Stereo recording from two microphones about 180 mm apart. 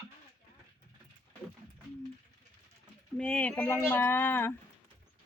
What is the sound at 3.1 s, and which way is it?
Speech, 5° left (ahead or behind).